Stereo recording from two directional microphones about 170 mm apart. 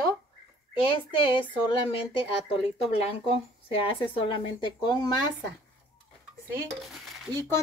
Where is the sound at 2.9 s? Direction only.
35° left (ahead or behind).